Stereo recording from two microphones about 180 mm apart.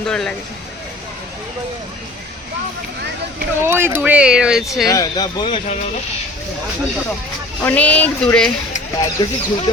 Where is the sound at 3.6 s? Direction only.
15° right (ahead or behind).